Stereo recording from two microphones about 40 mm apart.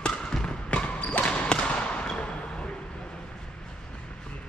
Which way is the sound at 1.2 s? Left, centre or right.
Left.